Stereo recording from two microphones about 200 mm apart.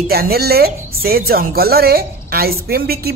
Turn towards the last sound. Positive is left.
turn(degrees=-50)  # may be behind; listen again after turning